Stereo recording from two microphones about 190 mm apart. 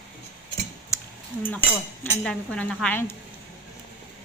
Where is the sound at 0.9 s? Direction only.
15° left (ahead or behind).